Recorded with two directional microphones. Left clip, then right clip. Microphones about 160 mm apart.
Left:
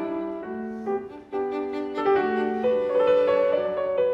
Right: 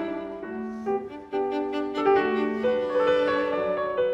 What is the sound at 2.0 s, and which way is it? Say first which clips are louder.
Music: even; centre (ahead or behind).